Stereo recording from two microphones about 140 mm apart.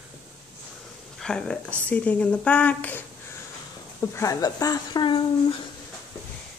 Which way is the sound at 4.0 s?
20° left (ahead or behind).